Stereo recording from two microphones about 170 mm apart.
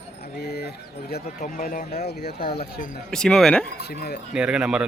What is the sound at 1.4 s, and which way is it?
Speech, 50° left (ahead or behind).